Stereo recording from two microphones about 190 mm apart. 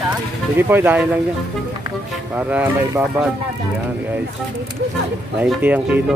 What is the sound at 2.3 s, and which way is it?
Speech, 10° right (ahead or behind).